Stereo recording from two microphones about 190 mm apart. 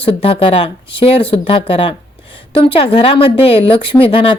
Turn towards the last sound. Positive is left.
turn(degrees=30)  # may be behind; listen again after turning